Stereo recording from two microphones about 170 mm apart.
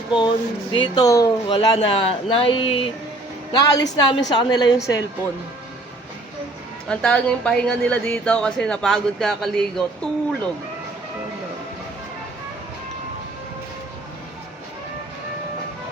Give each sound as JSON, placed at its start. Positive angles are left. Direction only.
{"t": 0.1, "sound": "speech", "side_deg": 30}
{"t": 6.8, "sound": "speech", "side_deg": 5}